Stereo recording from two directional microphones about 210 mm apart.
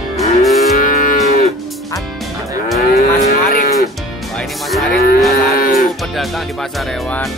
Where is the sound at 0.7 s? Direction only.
40° left (ahead or behind).